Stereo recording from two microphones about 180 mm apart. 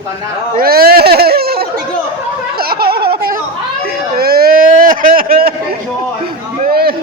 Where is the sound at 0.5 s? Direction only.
55° right (ahead or behind).